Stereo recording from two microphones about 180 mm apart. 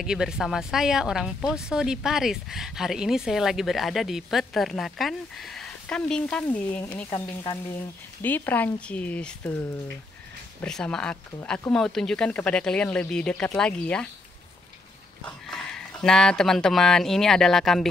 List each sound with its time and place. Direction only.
0.0 s speech: 5° right (ahead or behind)
15.2 s speech: centre (ahead or behind)